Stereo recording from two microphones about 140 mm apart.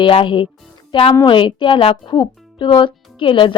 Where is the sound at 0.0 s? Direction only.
35° left (ahead or behind).